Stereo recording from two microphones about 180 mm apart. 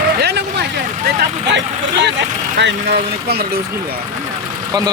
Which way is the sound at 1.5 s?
75° right (ahead or behind).